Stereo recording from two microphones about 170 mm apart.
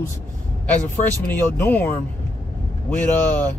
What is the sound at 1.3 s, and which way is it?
Speech, 10° left (ahead or behind).